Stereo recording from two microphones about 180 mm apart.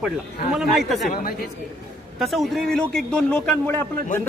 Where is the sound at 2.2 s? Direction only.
Centre (ahead or behind).